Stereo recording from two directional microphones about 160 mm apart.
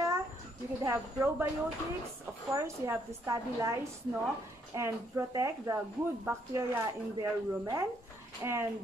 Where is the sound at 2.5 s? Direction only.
15° right (ahead or behind).